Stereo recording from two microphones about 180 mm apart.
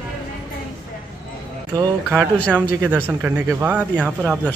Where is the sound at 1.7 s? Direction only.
20° right (ahead or behind).